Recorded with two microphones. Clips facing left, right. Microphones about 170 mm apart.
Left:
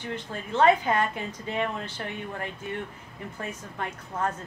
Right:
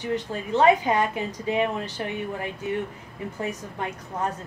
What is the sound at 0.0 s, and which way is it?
A woman's voice, 15° right (ahead or behind).